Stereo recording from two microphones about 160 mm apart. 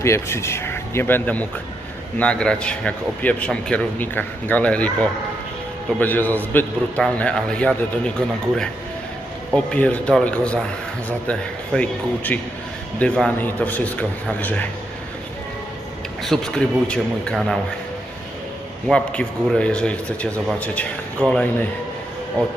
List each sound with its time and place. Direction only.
0.0 s a man's voice: 15° left (ahead or behind)
9.6 s a man's voice: 5° left (ahead or behind)
16.2 s a man's voice: 5° left (ahead or behind)
18.9 s a man's voice: 5° left (ahead or behind)